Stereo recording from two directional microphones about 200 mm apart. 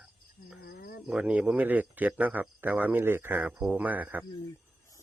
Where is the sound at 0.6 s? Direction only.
50° left (ahead or behind).